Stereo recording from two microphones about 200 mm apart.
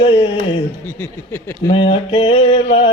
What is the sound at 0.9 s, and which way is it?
Speech, 10° left (ahead or behind).